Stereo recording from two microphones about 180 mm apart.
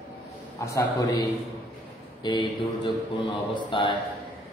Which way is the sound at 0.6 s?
20° left (ahead or behind).